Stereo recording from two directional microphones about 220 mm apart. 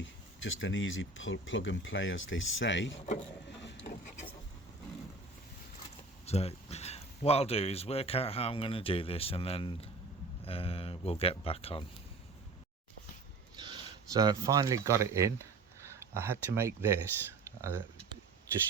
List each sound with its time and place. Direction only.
0.0 s speech: 60° left (ahead or behind)
3.2 s wood: 55° left (ahead or behind)
6.2 s speech: 30° left (ahead or behind)
13.6 s speech: 20° right (ahead or behind)
17.4 s a sound: 15° right (ahead or behind)